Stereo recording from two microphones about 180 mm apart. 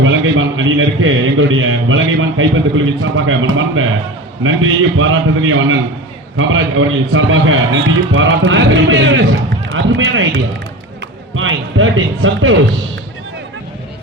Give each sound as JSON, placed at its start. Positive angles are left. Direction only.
{"t": 0.0, "sound": "a man's voice", "side_deg": -90}